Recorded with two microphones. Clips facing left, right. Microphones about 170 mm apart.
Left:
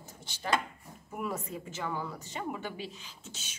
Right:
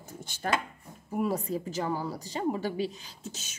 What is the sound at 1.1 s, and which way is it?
Speech, 35° right (ahead or behind).